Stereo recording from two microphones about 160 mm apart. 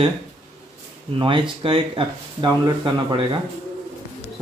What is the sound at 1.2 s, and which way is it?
Speech, 30° right (ahead or behind).